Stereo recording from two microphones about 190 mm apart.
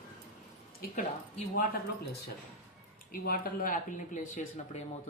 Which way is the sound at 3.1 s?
50° left (ahead or behind).